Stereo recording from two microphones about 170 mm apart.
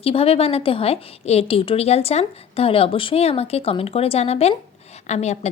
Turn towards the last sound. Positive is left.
turn(degrees=40)  # may be behind; listen again after turning